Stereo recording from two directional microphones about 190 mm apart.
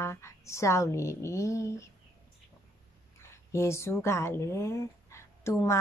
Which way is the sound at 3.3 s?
15° left (ahead or behind).